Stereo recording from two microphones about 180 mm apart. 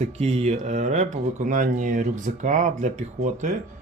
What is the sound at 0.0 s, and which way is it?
Speech, 40° right (ahead or behind).